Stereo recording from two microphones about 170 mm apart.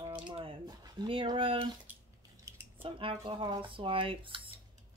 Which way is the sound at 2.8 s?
30° right (ahead or behind).